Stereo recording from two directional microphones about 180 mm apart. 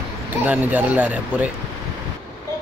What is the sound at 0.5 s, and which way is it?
A man's voice, 10° right (ahead or behind).